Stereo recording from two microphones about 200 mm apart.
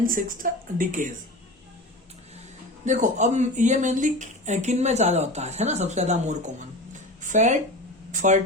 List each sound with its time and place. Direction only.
0.0 s speech: 45° right (ahead or behind)
2.8 s speech: 35° right (ahead or behind)